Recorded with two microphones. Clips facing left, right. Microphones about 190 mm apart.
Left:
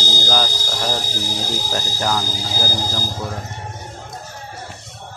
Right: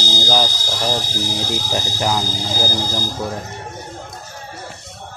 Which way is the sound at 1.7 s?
15° right (ahead or behind).